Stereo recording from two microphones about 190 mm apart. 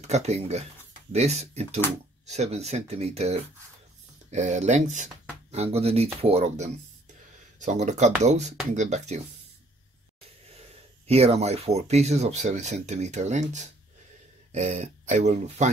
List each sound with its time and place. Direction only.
0.0 s speech: 35° right (ahead or behind)
11.1 s speech: 35° right (ahead or behind)